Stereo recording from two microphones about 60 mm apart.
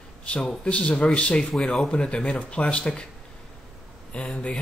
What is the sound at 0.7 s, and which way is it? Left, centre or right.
Speech, left.